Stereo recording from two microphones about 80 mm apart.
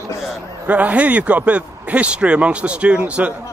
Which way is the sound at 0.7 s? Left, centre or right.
Centre.